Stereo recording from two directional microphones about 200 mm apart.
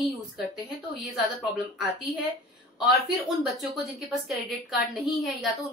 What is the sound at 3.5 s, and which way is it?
A woman's voice, centre (ahead or behind).